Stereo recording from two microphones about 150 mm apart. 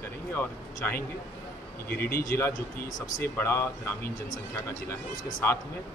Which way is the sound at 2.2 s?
15° left (ahead or behind).